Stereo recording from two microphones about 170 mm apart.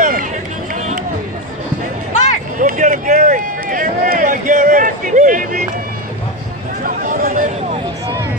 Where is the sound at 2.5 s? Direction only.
50° right (ahead or behind).